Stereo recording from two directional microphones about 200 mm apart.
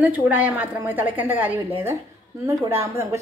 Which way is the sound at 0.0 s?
10° right (ahead or behind).